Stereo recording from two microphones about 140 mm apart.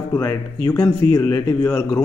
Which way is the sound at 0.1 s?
20° left (ahead or behind).